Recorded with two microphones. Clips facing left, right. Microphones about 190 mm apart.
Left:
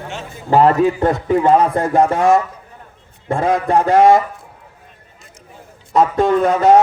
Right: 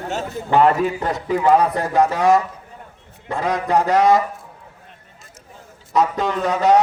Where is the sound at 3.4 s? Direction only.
25° left (ahead or behind).